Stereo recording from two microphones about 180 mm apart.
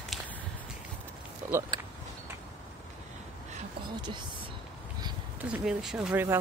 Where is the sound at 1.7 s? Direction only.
25° right (ahead or behind).